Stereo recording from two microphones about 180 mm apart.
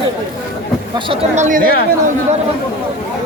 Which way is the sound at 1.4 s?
45° right (ahead or behind).